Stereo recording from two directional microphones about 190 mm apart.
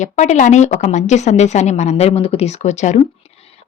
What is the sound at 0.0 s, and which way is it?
Speech, 40° left (ahead or behind).